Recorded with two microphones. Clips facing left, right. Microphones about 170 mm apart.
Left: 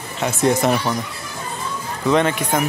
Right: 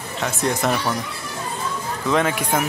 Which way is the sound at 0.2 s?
Centre (ahead or behind).